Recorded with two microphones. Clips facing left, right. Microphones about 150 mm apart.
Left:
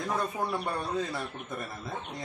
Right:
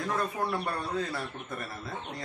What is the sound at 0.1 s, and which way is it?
A man's voice, 15° left (ahead or behind).